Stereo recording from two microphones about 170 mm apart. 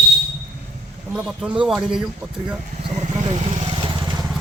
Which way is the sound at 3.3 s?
40° right (ahead or behind).